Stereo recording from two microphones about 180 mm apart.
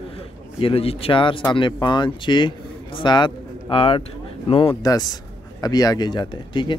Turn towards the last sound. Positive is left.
turn(degrees=25)  # may be behind; listen again after turning